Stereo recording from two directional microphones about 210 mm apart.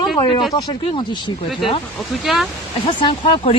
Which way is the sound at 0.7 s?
25° left (ahead or behind).